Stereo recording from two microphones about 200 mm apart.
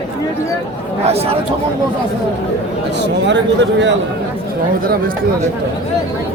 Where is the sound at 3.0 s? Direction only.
60° right (ahead or behind).